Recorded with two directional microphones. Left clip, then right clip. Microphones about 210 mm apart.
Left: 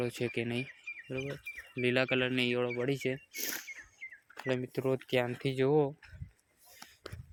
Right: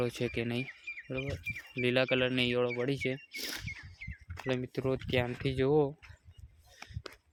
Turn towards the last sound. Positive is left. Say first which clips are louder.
# even
turn(degrees=-15)  # may be behind; listen again after turning